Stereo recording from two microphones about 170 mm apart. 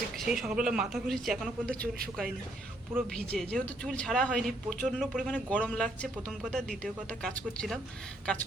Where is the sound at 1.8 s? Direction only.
60° right (ahead or behind).